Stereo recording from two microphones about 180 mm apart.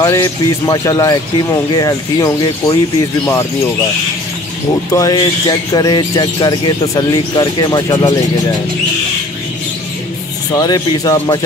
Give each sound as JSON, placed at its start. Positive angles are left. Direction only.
{"t": 0.0, "sound": "speech", "side_deg": 20}
{"t": 4.9, "sound": "speech", "side_deg": 20}
{"t": 10.6, "sound": "speech", "side_deg": 20}